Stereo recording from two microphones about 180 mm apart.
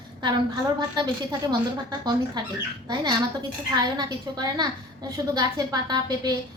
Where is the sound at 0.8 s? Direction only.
25° right (ahead or behind).